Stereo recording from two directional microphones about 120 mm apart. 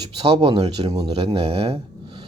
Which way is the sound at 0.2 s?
55° right (ahead or behind).